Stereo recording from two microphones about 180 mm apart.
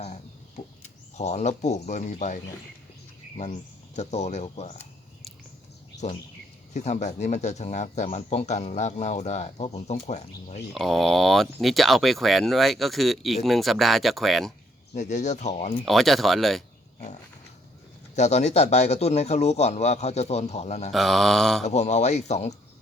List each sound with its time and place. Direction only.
0.0 s a sound: 40° left (ahead or behind)
1.1 s speech: 40° left (ahead or behind)
6.7 s speech: 40° left (ahead or behind)
10.8 s speech: centre (ahead or behind)
14.9 s speech: 40° left (ahead or behind)
15.9 s speech: centre (ahead or behind)
18.2 s speech: 40° left (ahead or behind)
20.9 s speech: centre (ahead or behind)
21.6 s speech: 40° left (ahead or behind)